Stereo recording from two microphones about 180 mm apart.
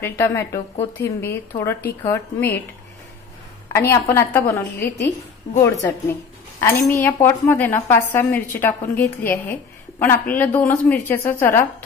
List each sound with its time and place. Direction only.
0.2 s a woman's voice: 15° left (ahead or behind)
3.7 s a woman's voice: 15° left (ahead or behind)